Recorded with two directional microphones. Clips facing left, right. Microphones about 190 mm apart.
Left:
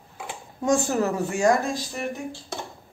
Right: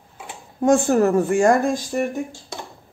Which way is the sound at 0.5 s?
55° right (ahead or behind).